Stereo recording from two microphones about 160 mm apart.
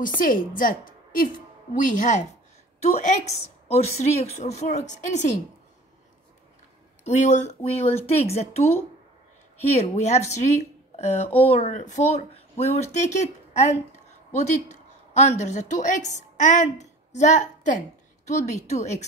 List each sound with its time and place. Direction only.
0.2 s a woman's voice: 60° left (ahead or behind)
7.1 s speech: 45° left (ahead or behind)
15.1 s a woman's voice: 45° left (ahead or behind)